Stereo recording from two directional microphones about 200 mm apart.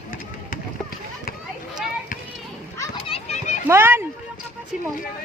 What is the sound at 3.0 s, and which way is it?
Children playing, 30° left (ahead or behind).